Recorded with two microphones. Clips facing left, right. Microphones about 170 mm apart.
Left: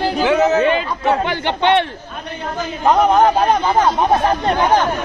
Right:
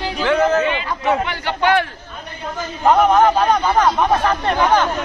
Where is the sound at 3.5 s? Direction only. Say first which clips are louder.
Left 1 dB; 20° left (ahead or behind).